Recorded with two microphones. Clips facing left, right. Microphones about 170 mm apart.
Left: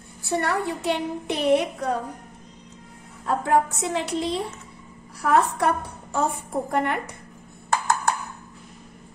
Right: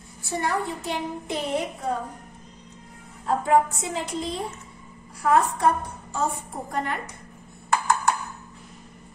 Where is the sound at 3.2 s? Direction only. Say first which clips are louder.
Right 1 dB; 75° left (ahead or behind).